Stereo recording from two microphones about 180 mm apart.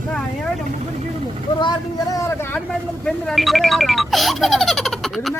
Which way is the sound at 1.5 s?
25° left (ahead or behind).